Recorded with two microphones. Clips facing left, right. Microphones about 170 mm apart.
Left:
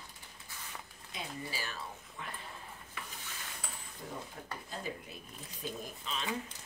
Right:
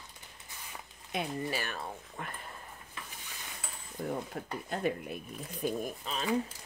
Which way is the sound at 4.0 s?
65° right (ahead or behind).